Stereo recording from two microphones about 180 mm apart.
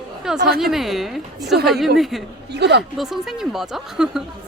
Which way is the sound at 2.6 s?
70° right (ahead or behind).